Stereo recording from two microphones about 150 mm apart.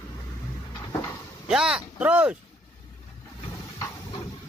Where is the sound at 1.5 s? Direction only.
5° right (ahead or behind).